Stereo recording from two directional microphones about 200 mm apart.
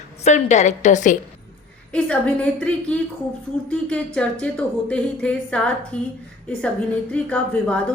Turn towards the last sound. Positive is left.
turn(degrees=5)  # may be behind; listen again after turning